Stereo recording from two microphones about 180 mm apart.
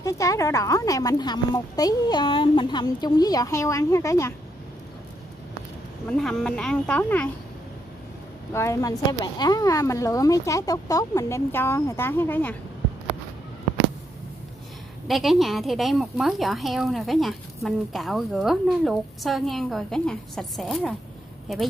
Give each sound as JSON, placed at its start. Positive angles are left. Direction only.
{"t": 0.0, "sound": "a woman's voice", "side_deg": 20}
{"t": 6.0, "sound": "a woman's voice", "side_deg": 5}
{"t": 8.5, "sound": "speech", "side_deg": 15}
{"t": 15.0, "sound": "a woman's voice", "side_deg": 0}